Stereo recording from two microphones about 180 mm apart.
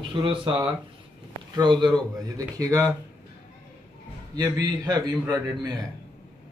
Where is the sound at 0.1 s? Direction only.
25° right (ahead or behind).